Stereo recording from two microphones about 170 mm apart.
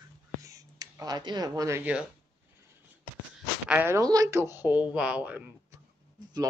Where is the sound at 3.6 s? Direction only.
10° right (ahead or behind).